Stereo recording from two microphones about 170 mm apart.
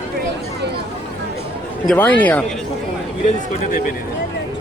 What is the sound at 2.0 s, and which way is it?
Speech, 10° left (ahead or behind).